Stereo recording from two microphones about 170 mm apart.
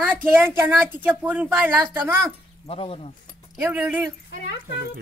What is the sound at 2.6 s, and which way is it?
Speech, 35° left (ahead or behind).